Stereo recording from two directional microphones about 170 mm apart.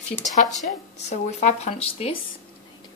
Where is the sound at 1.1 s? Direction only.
40° left (ahead or behind).